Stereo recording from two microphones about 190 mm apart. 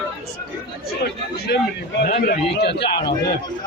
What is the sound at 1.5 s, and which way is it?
A man's voice, 60° left (ahead or behind).